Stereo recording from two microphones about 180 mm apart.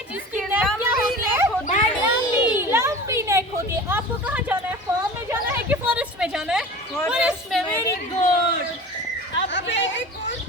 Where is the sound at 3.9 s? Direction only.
10° right (ahead or behind).